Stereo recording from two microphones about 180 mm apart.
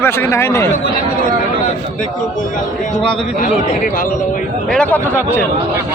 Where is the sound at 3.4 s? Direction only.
50° left (ahead or behind).